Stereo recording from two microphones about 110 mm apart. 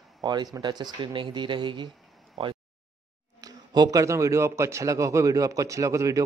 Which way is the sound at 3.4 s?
35° right (ahead or behind).